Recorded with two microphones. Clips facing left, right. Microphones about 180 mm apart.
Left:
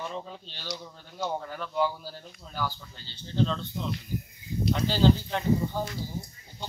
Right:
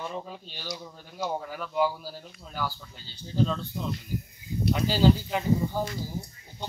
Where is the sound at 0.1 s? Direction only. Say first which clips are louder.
Right 1 dB; 10° right (ahead or behind).